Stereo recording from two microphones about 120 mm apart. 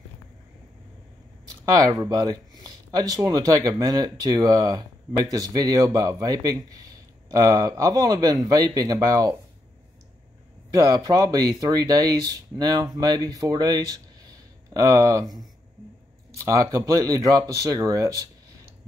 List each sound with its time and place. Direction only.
1.4 s a sound: 30° right (ahead or behind)
2.0 s a man's voice: 30° right (ahead or behind)
10.7 s a man's voice: 30° right (ahead or behind)
16.4 s speech: 30° right (ahead or behind)